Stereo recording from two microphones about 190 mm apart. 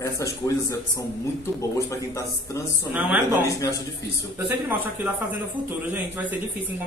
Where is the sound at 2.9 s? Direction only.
10° right (ahead or behind).